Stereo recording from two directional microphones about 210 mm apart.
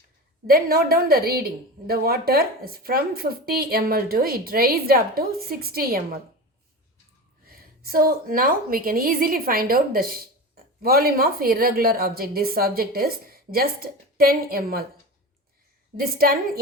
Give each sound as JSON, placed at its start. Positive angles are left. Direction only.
{"t": 0.4, "sound": "a woman's voice", "side_deg": -45}
{"t": 7.4, "sound": "a woman's voice", "side_deg": -45}
{"t": 16.0, "sound": "a woman's voice", "side_deg": -45}